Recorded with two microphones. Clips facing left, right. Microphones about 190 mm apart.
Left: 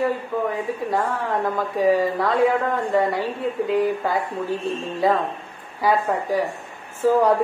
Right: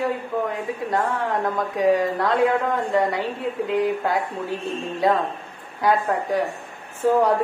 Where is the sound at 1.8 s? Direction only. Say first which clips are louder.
Left 1 dB; 5° left (ahead or behind).